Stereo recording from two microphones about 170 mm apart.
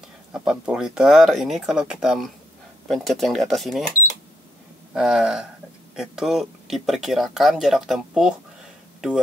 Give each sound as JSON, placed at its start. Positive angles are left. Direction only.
{"t": 0.3, "sound": "speech", "side_deg": -5}
{"t": 4.9, "sound": "speech", "side_deg": -5}